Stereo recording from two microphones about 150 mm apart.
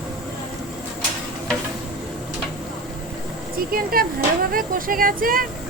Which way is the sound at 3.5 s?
75° right (ahead or behind).